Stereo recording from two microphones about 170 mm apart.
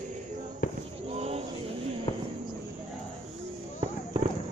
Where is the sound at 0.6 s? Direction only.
55° left (ahead or behind).